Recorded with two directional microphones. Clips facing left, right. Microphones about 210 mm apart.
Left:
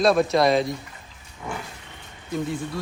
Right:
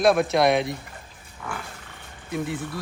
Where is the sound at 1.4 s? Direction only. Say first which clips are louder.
Left 2 dB; 20° left (ahead or behind).